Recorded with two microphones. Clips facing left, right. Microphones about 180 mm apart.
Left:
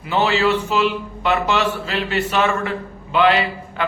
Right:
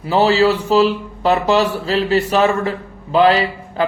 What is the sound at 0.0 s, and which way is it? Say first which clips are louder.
A man's voice: right 5 dB; 35° right (ahead or behind).